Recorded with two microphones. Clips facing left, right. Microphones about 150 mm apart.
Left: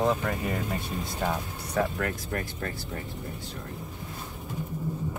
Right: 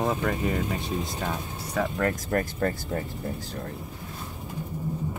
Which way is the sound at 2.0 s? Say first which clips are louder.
Right 5 dB; 45° right (ahead or behind).